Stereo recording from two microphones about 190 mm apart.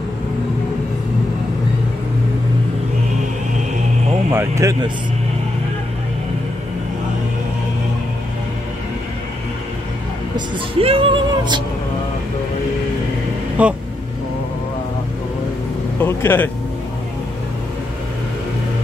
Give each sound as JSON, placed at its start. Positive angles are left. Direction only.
{"t": 4.3, "sound": "speech", "side_deg": -15}
{"t": 10.3, "sound": "a sound", "side_deg": -30}
{"t": 13.6, "sound": "speech", "side_deg": -5}
{"t": 16.0, "sound": "speech", "side_deg": 10}